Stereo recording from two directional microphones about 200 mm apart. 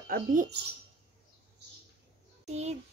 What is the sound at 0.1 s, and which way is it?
Speech, 45° right (ahead or behind).